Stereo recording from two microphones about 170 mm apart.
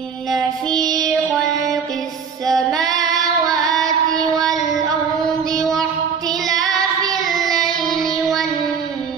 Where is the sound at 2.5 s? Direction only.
Centre (ahead or behind).